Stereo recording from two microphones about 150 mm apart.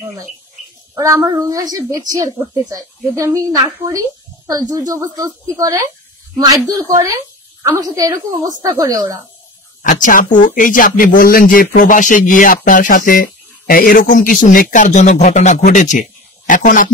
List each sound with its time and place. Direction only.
0.9 s a woman's voice: 20° right (ahead or behind)
10.0 s speech: 60° left (ahead or behind)